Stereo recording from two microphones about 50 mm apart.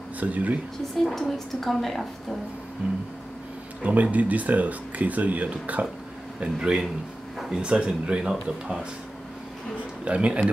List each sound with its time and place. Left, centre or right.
0.2 s speech: right
1.0 s a woman's voice: centre
3.8 s speech: right
6.4 s speech: centre
10.0 s speech: right